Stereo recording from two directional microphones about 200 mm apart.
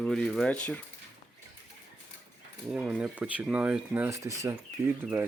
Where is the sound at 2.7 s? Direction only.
5° right (ahead or behind).